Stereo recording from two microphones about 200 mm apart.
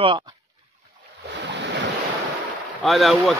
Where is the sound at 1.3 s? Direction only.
60° right (ahead or behind).